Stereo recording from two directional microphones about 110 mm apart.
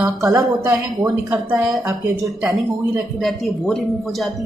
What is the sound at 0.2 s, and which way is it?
Speech, 35° right (ahead or behind).